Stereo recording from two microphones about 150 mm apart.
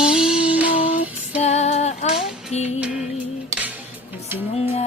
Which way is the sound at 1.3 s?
45° left (ahead or behind).